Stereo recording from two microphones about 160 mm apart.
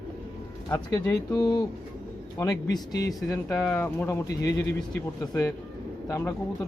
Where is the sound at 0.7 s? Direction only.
20° left (ahead or behind).